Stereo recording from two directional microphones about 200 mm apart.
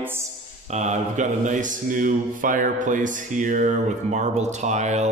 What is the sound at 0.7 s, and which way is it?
Speech, 35° right (ahead or behind).